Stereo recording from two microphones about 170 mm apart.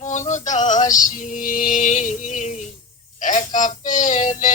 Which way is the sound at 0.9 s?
50° left (ahead or behind).